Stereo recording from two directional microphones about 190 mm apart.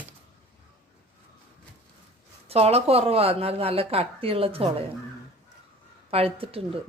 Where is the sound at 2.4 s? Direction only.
30° right (ahead or behind).